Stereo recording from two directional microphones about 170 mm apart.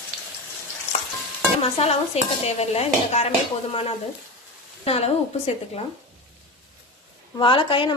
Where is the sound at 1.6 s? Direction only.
35° left (ahead or behind).